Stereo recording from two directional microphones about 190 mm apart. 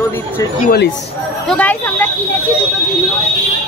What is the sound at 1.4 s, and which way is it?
Speech, 10° left (ahead or behind).